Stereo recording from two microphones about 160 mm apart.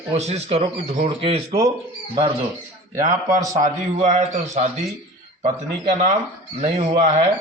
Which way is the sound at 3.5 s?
50° right (ahead or behind).